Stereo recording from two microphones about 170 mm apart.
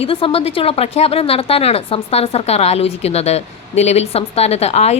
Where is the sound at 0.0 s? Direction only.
35° left (ahead or behind).